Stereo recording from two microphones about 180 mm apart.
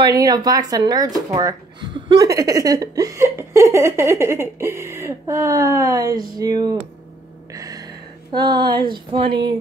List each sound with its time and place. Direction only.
0.0 s speech: 20° right (ahead or behind)
7.5 s a sound: 20° right (ahead or behind)
8.9 s speech: 25° right (ahead or behind)